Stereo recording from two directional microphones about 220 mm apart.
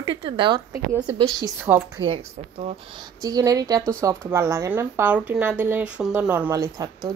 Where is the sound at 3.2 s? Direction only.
15° right (ahead or behind).